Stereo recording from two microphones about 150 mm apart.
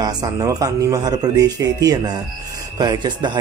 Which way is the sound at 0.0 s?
25° right (ahead or behind).